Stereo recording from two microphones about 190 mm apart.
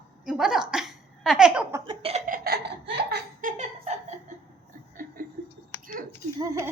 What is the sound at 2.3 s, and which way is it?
Laughter, 60° right (ahead or behind).